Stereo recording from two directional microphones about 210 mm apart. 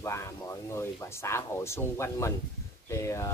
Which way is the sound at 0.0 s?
15° left (ahead or behind).